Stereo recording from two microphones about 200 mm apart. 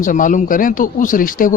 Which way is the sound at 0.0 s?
40° left (ahead or behind).